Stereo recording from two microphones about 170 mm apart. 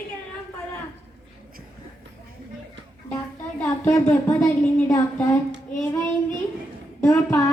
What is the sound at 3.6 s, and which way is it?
Speech, 10° left (ahead or behind).